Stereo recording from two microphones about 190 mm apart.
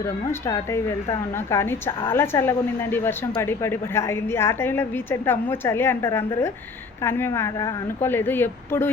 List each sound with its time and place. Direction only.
0.0 s a woman's voice: 15° left (ahead or behind)